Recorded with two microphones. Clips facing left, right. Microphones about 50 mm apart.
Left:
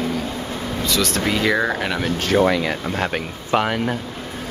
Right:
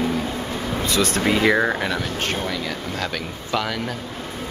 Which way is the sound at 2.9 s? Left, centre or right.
Left.